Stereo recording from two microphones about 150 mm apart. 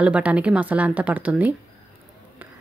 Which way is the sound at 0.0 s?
10° right (ahead or behind).